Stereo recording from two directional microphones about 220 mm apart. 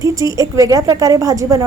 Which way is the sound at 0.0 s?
15° right (ahead or behind).